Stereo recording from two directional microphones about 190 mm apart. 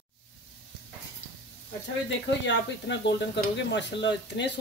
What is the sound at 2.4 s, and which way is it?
Speech, 70° left (ahead or behind).